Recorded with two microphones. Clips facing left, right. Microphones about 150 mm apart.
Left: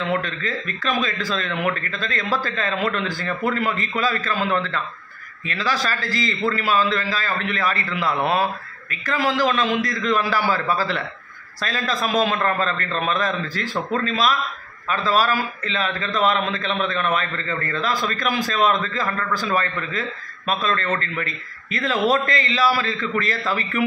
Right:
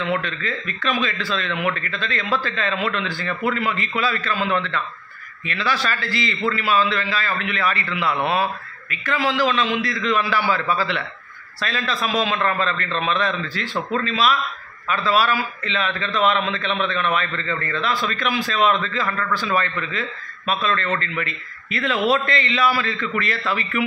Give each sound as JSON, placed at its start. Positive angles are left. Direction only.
{"t": 0.2, "sound": "a man's voice", "side_deg": 40}